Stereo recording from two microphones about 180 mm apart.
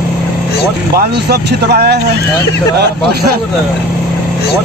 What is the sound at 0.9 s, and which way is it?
Speech, 65° right (ahead or behind).